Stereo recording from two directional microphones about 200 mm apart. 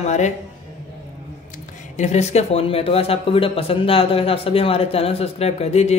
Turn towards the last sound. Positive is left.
turn(degrees=30)  # may be behind; listen again after turning